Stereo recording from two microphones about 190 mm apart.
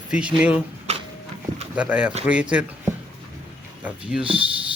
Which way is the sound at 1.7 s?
5° right (ahead or behind).